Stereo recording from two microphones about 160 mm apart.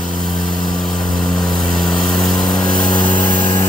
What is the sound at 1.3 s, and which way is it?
Vehicle, 25° left (ahead or behind).